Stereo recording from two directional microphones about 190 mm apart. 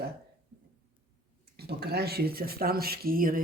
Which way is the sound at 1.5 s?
55° right (ahead or behind).